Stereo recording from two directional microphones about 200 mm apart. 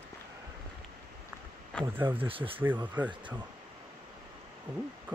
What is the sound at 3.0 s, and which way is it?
Speech, 10° right (ahead or behind).